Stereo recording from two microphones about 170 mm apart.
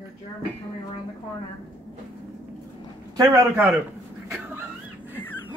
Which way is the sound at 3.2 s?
15° right (ahead or behind).